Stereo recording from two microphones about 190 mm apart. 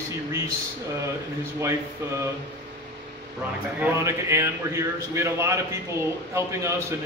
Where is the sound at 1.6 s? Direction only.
15° right (ahead or behind).